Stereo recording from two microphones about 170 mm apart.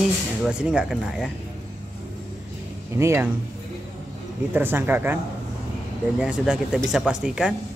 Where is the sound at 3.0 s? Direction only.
15° right (ahead or behind).